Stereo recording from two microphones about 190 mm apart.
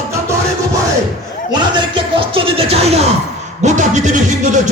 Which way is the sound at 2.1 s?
30° right (ahead or behind).